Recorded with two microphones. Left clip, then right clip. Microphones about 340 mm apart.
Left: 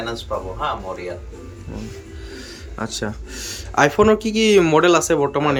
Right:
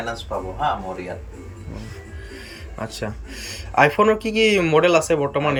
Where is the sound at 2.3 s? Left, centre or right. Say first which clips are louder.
Left 2 dB; centre.